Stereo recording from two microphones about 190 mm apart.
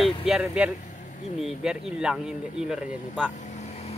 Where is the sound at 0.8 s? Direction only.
40° left (ahead or behind).